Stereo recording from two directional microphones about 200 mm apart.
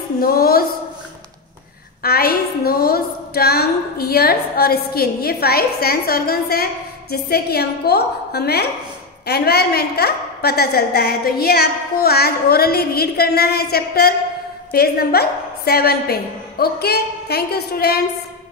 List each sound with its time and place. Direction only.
0.2 s a woman's voice: 50° left (ahead or behind)
2.0 s a woman's voice: 50° left (ahead or behind)